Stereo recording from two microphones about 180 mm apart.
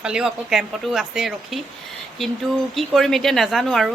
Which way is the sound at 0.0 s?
5° right (ahead or behind).